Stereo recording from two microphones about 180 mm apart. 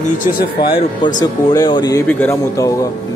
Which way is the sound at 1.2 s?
20° left (ahead or behind).